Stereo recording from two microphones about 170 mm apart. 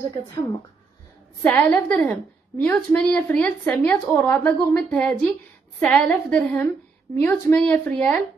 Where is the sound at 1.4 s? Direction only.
10° left (ahead or behind).